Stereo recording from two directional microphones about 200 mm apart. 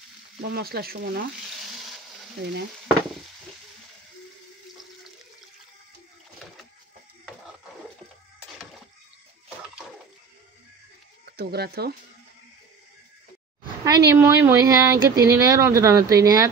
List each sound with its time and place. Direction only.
0.4 s speech: 50° right (ahead or behind)
11.2 s speech: 55° right (ahead or behind)
13.8 s speech: 15° right (ahead or behind)